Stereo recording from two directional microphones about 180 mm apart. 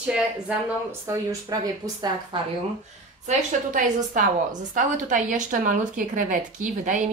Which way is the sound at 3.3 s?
45° right (ahead or behind).